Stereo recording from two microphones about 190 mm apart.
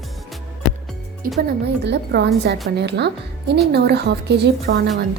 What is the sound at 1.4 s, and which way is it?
A woman's voice, 60° right (ahead or behind).